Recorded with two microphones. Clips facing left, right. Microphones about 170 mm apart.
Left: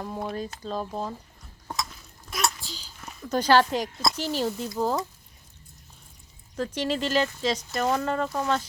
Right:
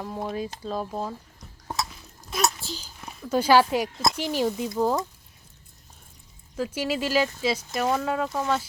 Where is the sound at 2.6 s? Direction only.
45° right (ahead or behind).